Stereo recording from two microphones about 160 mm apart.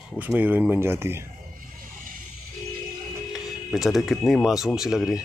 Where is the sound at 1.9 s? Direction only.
60° right (ahead or behind).